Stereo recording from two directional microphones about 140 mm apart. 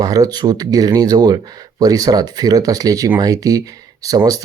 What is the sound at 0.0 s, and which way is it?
Speech, 25° right (ahead or behind).